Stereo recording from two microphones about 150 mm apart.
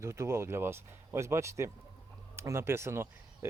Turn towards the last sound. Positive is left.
turn(degrees=-15)  # may be behind; listen again after turning